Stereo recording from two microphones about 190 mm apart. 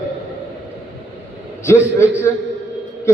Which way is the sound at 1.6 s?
15° left (ahead or behind).